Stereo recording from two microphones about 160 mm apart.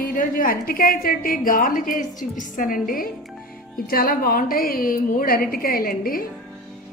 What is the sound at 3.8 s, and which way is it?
A woman's voice, 65° left (ahead or behind).